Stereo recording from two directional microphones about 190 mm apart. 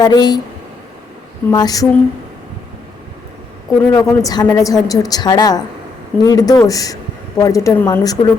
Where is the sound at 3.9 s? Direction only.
20° left (ahead or behind).